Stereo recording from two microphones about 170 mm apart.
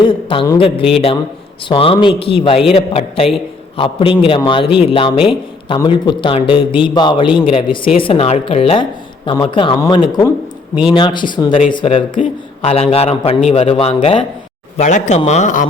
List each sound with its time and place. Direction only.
0.0 s a man's voice: 30° left (ahead or behind); by 15.6 s 45° left (ahead or behind)